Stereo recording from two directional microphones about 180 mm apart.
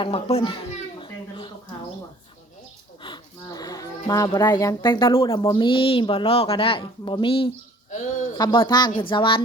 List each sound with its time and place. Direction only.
0.0 s a child's voice: 35° left (ahead or behind)
1.0 s a sound: 25° left (ahead or behind)
3.0 s a man's voice: 25° left (ahead or behind)